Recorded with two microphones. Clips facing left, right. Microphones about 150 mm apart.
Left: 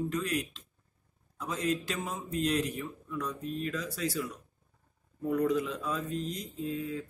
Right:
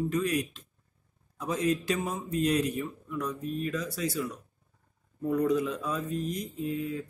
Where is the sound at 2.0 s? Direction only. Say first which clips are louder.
Right 1 dB; 15° right (ahead or behind).